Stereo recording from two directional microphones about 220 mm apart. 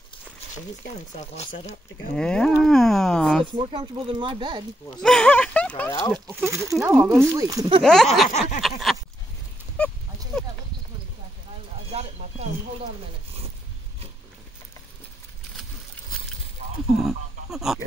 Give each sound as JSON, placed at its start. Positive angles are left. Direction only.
{"t": 1.3, "sound": "speech", "side_deg": 30}
{"t": 2.1, "sound": "speech", "side_deg": 5}
{"t": 3.5, "sound": "speech", "side_deg": -20}
{"t": 5.0, "sound": "speech", "side_deg": 5}
{"t": 6.2, "sound": "speech", "side_deg": -15}
{"t": 7.8, "sound": "speech", "side_deg": 5}
{"t": 8.3, "sound": "a sound", "side_deg": 30}
{"t": 8.5, "sound": "speech", "side_deg": 0}
{"t": 9.8, "sound": "goose", "side_deg": 5}
{"t": 11.9, "sound": "a sound", "side_deg": -30}
{"t": 16.9, "sound": "a sound", "side_deg": 0}